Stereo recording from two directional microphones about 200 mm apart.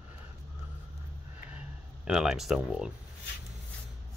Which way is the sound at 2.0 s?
Centre (ahead or behind).